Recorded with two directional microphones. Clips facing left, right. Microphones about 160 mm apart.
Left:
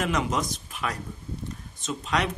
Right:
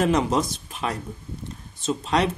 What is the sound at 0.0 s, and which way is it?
Speech, 30° right (ahead or behind).